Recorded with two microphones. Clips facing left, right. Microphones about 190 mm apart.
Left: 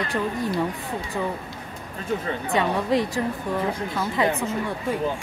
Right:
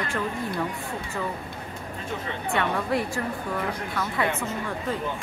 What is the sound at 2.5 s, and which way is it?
A woman's voice, 20° left (ahead or behind).